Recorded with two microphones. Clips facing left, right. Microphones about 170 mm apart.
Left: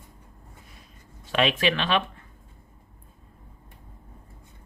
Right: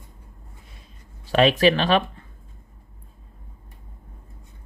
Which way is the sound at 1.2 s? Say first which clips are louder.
Right 7 dB; 35° right (ahead or behind).